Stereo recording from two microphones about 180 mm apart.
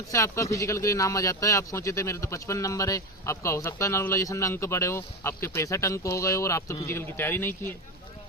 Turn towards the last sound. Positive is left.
turn(degrees=15)  # may be behind; listen again after turning